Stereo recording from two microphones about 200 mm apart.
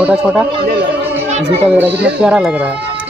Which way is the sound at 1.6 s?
10° right (ahead or behind).